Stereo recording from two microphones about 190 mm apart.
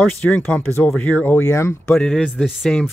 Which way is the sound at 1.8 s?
5° left (ahead or behind).